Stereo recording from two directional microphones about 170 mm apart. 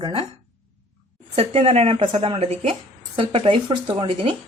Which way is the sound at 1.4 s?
35° right (ahead or behind).